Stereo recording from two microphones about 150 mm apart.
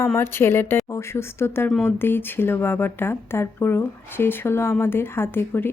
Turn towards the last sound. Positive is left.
turn(degrees=15)  # may be behind; listen again after turning